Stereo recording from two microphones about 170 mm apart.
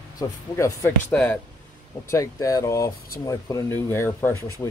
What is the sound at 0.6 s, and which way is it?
Speech, 15° left (ahead or behind).